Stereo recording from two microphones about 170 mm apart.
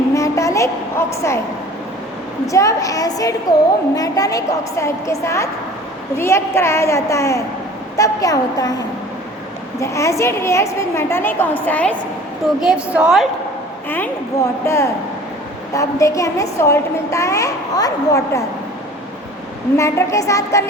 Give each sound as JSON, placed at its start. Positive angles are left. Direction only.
{"t": 0.1, "sound": "a sound", "side_deg": 20}
{"t": 2.5, "sound": "a woman's voice", "side_deg": 20}
{"t": 9.8, "sound": "a woman's voice", "side_deg": 15}
{"t": 12.5, "sound": "a woman's voice", "side_deg": -5}
{"t": 14.6, "sound": "a woman's voice", "side_deg": 15}
{"t": 19.7, "sound": "a woman's voice", "side_deg": 15}